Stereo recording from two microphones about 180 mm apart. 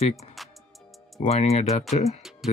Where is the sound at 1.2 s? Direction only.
35° left (ahead or behind).